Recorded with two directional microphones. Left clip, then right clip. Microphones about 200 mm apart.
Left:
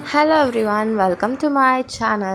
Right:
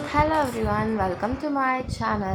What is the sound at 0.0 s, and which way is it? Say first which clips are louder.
Speech: left 7 dB; 30° left (ahead or behind).